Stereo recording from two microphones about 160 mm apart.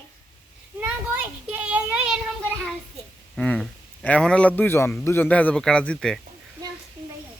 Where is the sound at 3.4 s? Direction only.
5° left (ahead or behind).